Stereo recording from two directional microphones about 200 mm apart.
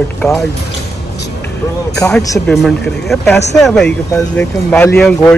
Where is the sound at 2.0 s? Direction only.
15° left (ahead or behind).